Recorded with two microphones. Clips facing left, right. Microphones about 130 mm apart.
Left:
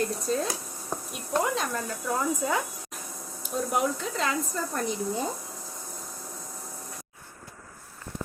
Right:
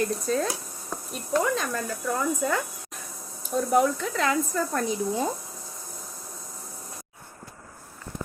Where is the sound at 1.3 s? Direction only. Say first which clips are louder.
Right 2 dB; 15° left (ahead or behind).